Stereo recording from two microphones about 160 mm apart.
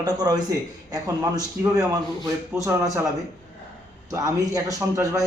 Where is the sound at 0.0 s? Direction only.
25° right (ahead or behind).